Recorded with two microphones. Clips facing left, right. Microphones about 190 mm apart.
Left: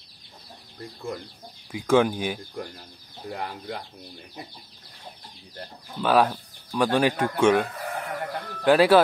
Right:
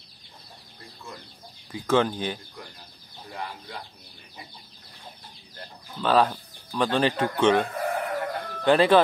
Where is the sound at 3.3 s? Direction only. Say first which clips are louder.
Left 4 dB; 55° left (ahead or behind).